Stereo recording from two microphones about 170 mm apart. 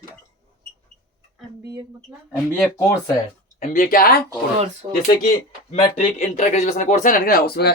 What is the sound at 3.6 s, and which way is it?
Speech, 50° left (ahead or behind).